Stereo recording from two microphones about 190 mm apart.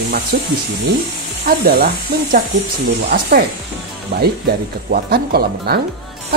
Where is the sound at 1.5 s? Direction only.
55° right (ahead or behind).